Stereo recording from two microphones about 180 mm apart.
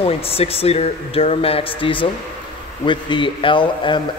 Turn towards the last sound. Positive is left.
turn(degrees=25)  # may be behind; listen again after turning